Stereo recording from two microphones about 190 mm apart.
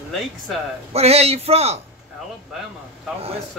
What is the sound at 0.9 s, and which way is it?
Speech, 35° right (ahead or behind).